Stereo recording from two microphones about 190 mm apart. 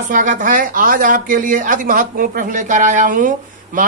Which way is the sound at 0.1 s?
45° right (ahead or behind).